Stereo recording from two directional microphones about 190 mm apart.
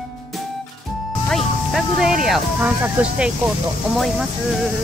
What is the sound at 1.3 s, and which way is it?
Music, centre (ahead or behind).